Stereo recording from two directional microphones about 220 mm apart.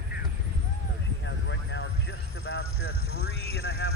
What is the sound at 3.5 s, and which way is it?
Speech, 55° left (ahead or behind).